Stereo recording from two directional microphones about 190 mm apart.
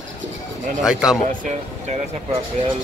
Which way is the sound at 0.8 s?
5° right (ahead or behind).